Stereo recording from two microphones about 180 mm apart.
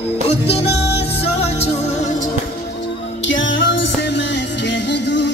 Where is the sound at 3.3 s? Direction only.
90° left.